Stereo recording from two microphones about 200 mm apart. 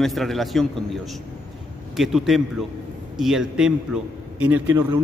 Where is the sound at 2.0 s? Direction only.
Centre (ahead or behind).